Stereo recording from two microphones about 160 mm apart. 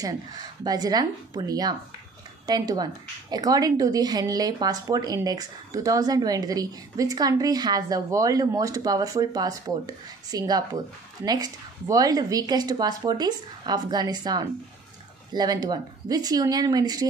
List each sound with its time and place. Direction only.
0.0 s a woman's voice: 25° right (ahead or behind)